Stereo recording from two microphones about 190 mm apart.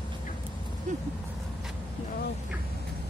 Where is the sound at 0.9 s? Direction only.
40° right (ahead or behind).